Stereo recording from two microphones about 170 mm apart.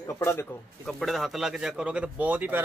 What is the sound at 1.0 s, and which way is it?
Speech, centre (ahead or behind).